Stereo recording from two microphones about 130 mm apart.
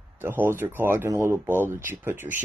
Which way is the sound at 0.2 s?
15° right (ahead or behind).